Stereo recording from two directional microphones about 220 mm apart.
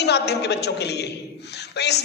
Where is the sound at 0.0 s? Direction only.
50° left (ahead or behind).